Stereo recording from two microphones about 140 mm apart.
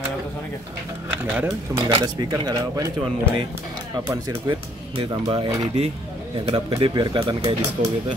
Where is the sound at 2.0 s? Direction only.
30° right (ahead or behind).